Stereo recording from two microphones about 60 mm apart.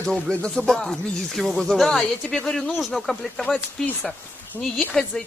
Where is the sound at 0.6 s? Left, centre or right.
Centre.